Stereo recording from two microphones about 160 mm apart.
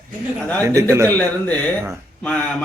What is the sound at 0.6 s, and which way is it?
Speech, 20° right (ahead or behind).